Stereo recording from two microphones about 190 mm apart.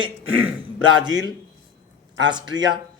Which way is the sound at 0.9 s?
20° right (ahead or behind).